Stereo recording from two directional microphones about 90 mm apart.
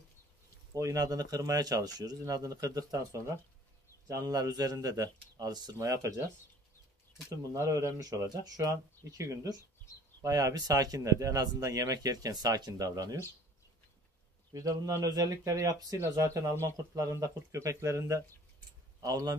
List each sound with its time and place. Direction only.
0.7 s speech: 40° right (ahead or behind)
5.8 s speech: 35° right (ahead or behind)
7.5 s speech: 35° right (ahead or behind)
14.5 s speech: 40° right (ahead or behind)